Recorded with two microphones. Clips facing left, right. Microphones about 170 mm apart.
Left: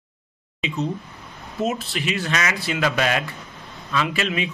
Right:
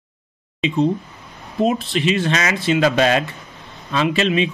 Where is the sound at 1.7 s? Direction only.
20° right (ahead or behind).